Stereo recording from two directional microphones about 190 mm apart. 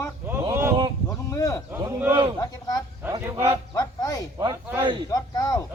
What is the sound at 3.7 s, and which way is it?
Speech, 20° left (ahead or behind).